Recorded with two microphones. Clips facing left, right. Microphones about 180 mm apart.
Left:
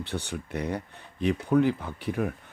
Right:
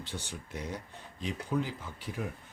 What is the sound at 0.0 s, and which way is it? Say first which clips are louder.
Speech: left 8 dB; 65° left (ahead or behind).